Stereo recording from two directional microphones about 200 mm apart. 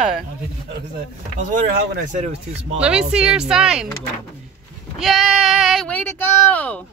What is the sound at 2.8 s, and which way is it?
Speech, 5° right (ahead or behind).